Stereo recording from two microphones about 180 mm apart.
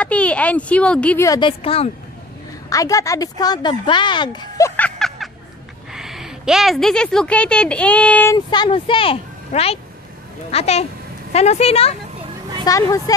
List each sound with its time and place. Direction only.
0.0 s a woman's voice: 5° left (ahead or behind)
1.6 s speech: 30° left (ahead or behind)
2.7 s a woman's voice: 20° left (ahead or behind)
8.4 s speech: 25° left (ahead or behind)
12.6 s a woman's voice: 15° left (ahead or behind)